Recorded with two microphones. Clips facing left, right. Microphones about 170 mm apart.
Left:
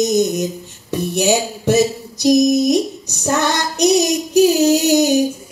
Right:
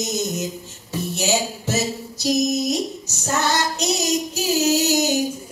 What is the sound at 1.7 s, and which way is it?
Music, 15° left (ahead or behind).